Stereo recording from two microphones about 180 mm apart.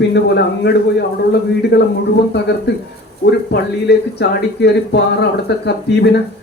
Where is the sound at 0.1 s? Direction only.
70° left (ahead or behind).